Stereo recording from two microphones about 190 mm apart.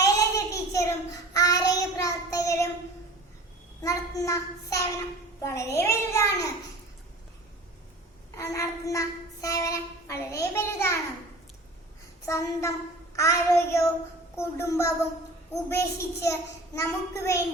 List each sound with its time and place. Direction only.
0.0 s a sound: 15° left (ahead or behind)
1.3 s child singing: 20° left (ahead or behind)
3.8 s a woman's voice: 15° left (ahead or behind)
8.4 s a woman's voice: 15° left (ahead or behind)
12.2 s a woman's voice: 15° left (ahead or behind)